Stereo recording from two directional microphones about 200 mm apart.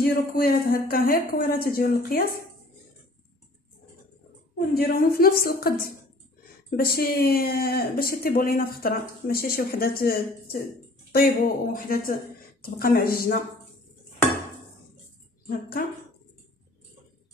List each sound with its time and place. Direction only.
0.0 s speech: 50° left (ahead or behind)
4.7 s speech: 50° left (ahead or behind)
15.4 s speech: 45° left (ahead or behind)